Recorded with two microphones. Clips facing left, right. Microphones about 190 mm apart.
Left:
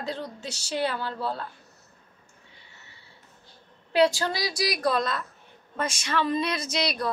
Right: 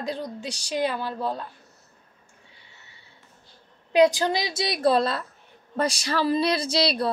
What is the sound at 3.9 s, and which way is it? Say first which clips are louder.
A woman's voice: right 3 dB; 15° right (ahead or behind).